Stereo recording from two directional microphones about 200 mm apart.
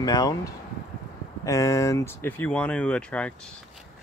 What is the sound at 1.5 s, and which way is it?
Speech, 15° left (ahead or behind).